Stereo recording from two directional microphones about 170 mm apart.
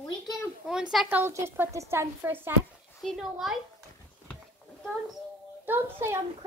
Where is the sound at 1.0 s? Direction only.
15° right (ahead or behind).